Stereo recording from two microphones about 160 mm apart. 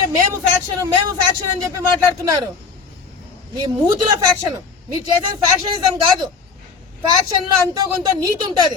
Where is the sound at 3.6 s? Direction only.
30° right (ahead or behind).